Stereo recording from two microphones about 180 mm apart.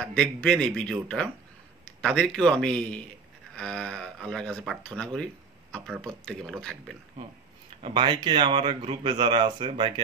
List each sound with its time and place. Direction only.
0.0 s speech: 5° left (ahead or behind)
7.8 s speech: 25° right (ahead or behind)